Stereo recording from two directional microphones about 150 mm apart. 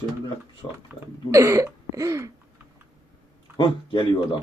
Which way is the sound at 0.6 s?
30° left (ahead or behind).